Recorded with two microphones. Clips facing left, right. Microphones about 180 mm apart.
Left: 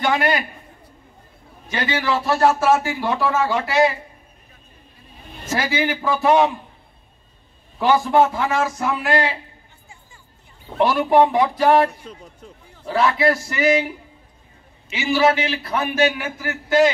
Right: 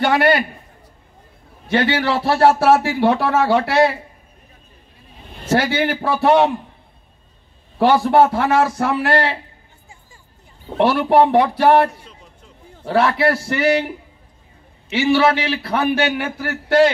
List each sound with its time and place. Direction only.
0.0 s a man's voice: 65° right (ahead or behind)
1.7 s a man's voice: 65° right (ahead or behind)
5.5 s a man's voice: 65° right (ahead or behind)
7.8 s a man's voice: 70° right (ahead or behind)
10.8 s a man's voice: 65° right (ahead or behind)
14.9 s a man's voice: 65° right (ahead or behind)